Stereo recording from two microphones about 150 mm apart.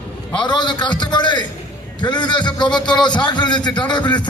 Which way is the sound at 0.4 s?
30° left (ahead or behind).